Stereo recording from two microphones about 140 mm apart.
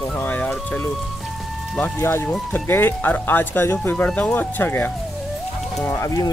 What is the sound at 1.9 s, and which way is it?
Speech, 15° left (ahead or behind).